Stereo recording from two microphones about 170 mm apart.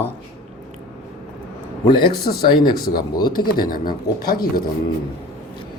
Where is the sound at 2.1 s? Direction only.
65° left (ahead or behind).